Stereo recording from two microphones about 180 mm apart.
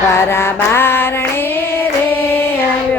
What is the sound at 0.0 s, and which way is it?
Mantra, 15° left (ahead or behind).